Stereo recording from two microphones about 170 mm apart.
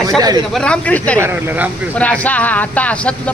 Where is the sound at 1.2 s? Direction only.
15° right (ahead or behind).